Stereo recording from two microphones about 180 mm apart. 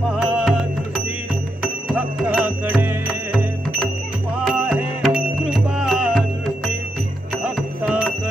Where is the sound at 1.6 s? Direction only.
5° right (ahead or behind).